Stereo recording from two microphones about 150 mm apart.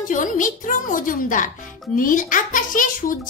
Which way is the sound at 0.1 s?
60° left (ahead or behind).